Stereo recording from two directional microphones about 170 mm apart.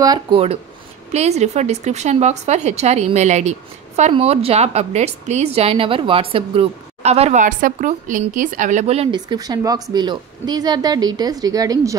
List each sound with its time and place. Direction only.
0.0 s speech: 25° right (ahead or behind)
1.1 s speech: 40° right (ahead or behind)
9.1 s speech: 25° right (ahead or behind)